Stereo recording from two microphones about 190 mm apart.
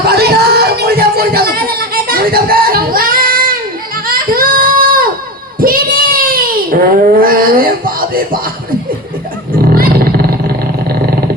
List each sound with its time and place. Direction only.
0.0 s a sound: 55° right (ahead or behind)
5.5 s child singing: 50° right (ahead or behind)
9.6 s roaring cats: 50° right (ahead or behind)